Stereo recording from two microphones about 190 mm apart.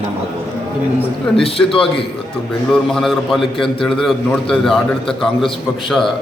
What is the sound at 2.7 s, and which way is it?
A man's voice, centre (ahead or behind).